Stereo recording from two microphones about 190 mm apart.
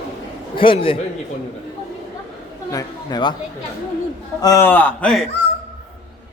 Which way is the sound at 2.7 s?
25° left (ahead or behind).